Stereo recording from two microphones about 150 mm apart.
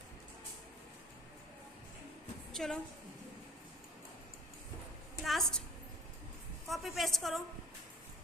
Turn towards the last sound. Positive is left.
turn(degrees=0)  # may be behind; listen again after turning